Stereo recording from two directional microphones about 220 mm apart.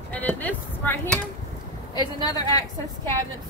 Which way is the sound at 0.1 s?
5° left (ahead or behind).